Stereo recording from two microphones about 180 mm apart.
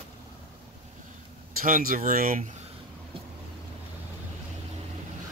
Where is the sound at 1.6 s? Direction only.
50° right (ahead or behind).